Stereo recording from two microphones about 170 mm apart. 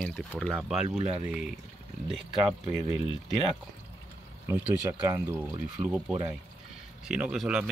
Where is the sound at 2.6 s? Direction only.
35° left (ahead or behind).